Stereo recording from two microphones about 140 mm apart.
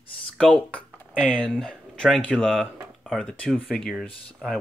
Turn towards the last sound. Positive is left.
turn(degrees=0)  # may be behind; listen again after turning